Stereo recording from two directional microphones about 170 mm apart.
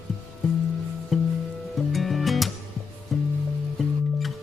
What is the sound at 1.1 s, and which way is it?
Music, centre (ahead or behind).